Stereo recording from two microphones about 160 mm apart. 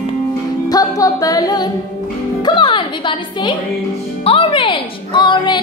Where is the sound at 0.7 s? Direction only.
25° left (ahead or behind).